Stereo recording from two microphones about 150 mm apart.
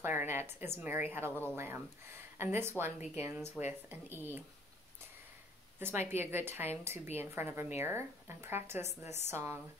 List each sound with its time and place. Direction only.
0.0 s a woman's voice: 15° right (ahead or behind)
5.8 s speech: 15° right (ahead or behind)
6.7 s a woman's voice: 45° left (ahead or behind)
7.2 s speech: 15° right (ahead or behind)